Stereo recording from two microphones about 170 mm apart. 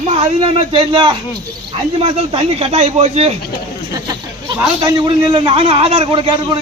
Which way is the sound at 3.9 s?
25° right (ahead or behind).